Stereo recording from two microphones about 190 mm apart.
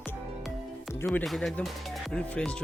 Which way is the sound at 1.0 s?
Centre (ahead or behind).